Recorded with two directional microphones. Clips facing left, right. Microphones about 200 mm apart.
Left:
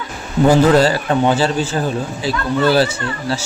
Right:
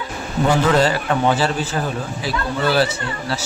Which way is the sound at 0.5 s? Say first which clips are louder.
Left 5 dB; 35° left (ahead or behind).